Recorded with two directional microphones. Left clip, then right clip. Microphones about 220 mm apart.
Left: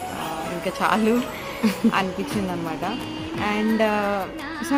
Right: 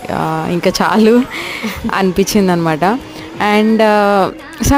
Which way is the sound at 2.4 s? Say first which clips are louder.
Right 14 dB; 45° right (ahead or behind).